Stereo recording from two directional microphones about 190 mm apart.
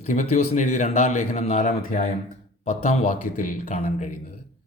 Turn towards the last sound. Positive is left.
turn(degrees=40)  # may be behind; listen again after turning